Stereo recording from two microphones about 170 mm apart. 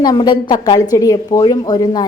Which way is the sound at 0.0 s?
25° left (ahead or behind).